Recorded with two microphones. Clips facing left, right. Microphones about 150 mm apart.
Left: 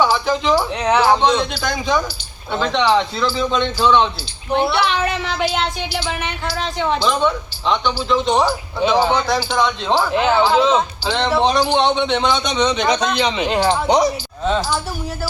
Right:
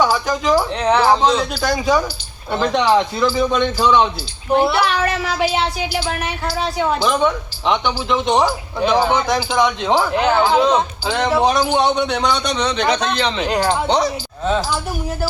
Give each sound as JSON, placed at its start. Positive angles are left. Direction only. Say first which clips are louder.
{"t": 0.0, "sound": "speech", "louder": "even", "side_deg": -10}
{"t": 0.5, "sound": "speech", "louder": "right 3 dB", "side_deg": 10}
{"t": 10.1, "sound": "speech", "louder": "even", "side_deg": 0}
{"t": 10.8, "sound": "speech", "louder": "even", "side_deg": -10}